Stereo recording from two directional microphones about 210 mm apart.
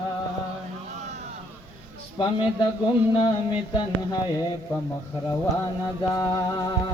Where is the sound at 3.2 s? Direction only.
20° left (ahead or behind).